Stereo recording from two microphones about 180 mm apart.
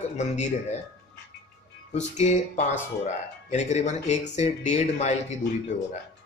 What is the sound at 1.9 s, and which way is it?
Speech, 40° left (ahead or behind).